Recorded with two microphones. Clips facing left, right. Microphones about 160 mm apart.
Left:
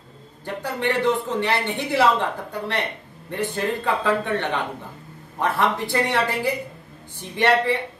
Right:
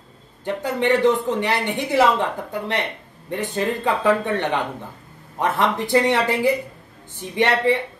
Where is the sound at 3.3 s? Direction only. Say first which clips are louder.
Right 1 dB; 20° right (ahead or behind).